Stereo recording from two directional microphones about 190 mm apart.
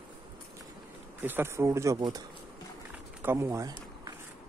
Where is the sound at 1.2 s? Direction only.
10° right (ahead or behind).